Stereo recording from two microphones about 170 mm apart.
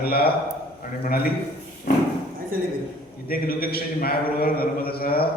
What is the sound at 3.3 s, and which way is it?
A man's voice, 60° left (ahead or behind).